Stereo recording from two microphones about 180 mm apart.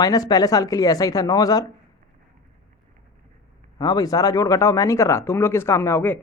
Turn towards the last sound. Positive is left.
turn(degrees=10)  # may be behind; listen again after turning